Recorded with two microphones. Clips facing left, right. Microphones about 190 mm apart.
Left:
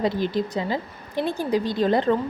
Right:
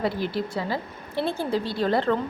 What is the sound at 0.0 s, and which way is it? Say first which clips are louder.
Speech: left 3 dB; 20° left (ahead or behind).